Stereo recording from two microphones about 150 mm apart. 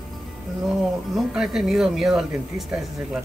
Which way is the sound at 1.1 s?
Centre (ahead or behind).